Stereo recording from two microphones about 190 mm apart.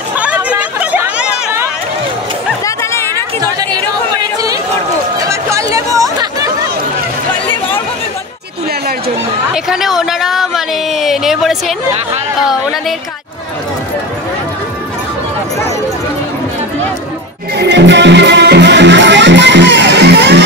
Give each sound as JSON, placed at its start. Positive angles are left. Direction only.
{"t": 0.2, "sound": "chatter", "side_deg": -5}
{"t": 2.6, "sound": "a sound", "side_deg": 15}
{"t": 3.2, "sound": "chatter", "side_deg": -20}
{"t": 5.3, "sound": "chatter", "side_deg": -15}
{"t": 9.7, "sound": "a sound", "side_deg": 0}
{"t": 17.6, "sound": "music", "side_deg": -65}